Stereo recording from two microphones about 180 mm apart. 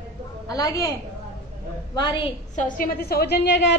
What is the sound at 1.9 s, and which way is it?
Speech, 25° left (ahead or behind).